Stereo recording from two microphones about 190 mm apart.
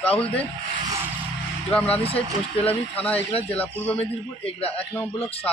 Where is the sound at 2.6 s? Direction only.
30° left (ahead or behind).